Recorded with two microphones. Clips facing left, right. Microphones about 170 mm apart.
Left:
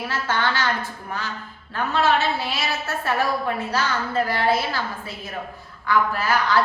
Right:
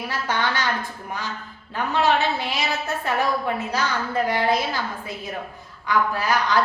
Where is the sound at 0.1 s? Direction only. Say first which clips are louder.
Even; 15° right (ahead or behind).